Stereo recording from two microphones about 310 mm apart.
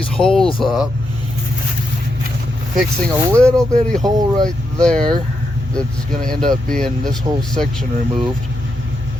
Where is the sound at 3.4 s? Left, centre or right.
Centre.